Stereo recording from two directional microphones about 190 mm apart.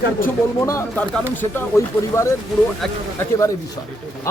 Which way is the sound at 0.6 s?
15° left (ahead or behind).